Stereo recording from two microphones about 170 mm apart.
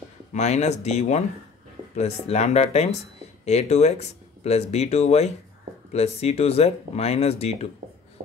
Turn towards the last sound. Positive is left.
turn(degrees=35)  # may be behind; listen again after turning